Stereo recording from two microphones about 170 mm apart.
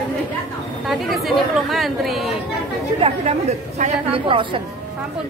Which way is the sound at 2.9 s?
35° right (ahead or behind).